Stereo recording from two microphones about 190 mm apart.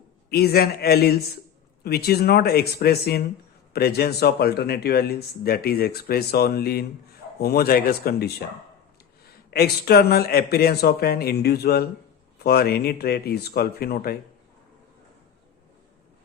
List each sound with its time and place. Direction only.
0.3 s speech: 55° left (ahead or behind)